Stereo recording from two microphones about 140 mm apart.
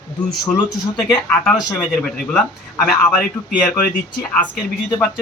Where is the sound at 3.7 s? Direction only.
85° left.